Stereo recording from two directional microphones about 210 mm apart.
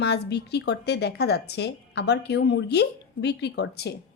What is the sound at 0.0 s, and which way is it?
A woman's voice, 50° left (ahead or behind).